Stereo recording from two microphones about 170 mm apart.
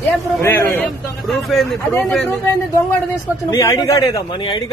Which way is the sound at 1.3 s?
Centre (ahead or behind).